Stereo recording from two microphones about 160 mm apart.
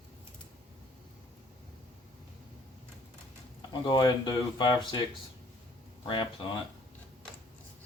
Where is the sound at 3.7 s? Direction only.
25° left (ahead or behind).